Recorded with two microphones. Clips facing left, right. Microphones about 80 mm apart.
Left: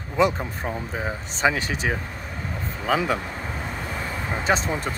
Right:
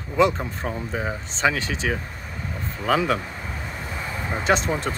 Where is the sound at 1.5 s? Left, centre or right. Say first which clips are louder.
Even; left.